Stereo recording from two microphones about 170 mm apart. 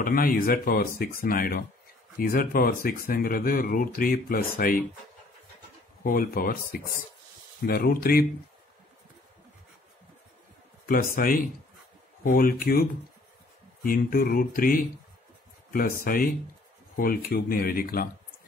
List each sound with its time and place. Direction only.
0.0 s speech: 55° left (ahead or behind)
6.0 s speech: 55° left (ahead or behind)
10.9 s speech: 60° left (ahead or behind)
13.8 s speech: 60° left (ahead or behind)